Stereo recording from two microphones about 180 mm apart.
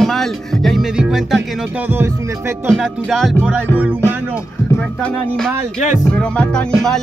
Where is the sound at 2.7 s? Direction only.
Centre (ahead or behind).